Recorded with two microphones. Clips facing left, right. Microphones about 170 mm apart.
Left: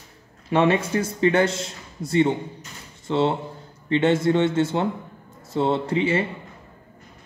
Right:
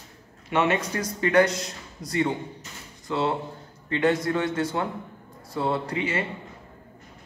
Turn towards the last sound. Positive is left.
turn(degrees=30)  # may be behind; listen again after turning